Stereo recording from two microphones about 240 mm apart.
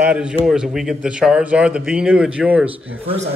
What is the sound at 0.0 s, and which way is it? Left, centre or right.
Speech, centre.